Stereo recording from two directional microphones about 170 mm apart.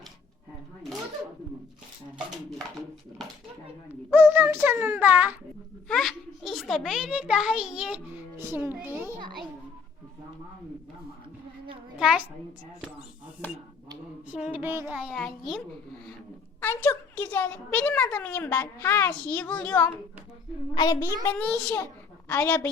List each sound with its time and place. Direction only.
4.1 s a sound: 10° right (ahead or behind)
5.9 s a child's voice: centre (ahead or behind)
11.9 s a woman's voice: 5° right (ahead or behind)
14.3 s a sound: 5° right (ahead or behind)
14.9 s a child's voice: centre (ahead or behind)
16.6 s a woman's voice: 10° left (ahead or behind)
20.7 s a woman's voice: 25° left (ahead or behind)